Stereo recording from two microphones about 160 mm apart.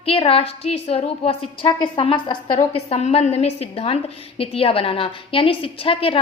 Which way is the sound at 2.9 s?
40° left (ahead or behind).